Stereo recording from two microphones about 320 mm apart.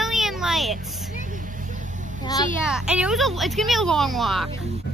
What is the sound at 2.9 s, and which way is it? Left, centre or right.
Speech, centre.